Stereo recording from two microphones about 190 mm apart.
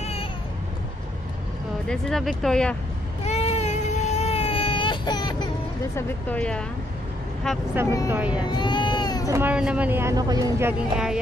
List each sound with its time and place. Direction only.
0.0 s a sound: 30° left (ahead or behind)
1.9 s speech: centre (ahead or behind)
3.3 s baby cry: 35° left (ahead or behind)
5.9 s speech: 5° left (ahead or behind)
8.1 s speech: 10° right (ahead or behind)
8.5 s speech: 25° left (ahead or behind)
9.3 s speech: 10° right (ahead or behind)